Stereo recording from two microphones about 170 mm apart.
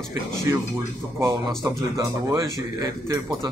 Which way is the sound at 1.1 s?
25° right (ahead or behind).